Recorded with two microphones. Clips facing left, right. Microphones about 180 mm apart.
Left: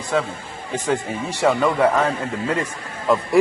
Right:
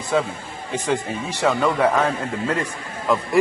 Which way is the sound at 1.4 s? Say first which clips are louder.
Left 2 dB; centre (ahead or behind).